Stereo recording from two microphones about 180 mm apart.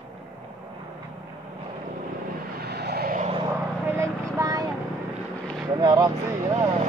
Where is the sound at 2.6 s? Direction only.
65° right (ahead or behind).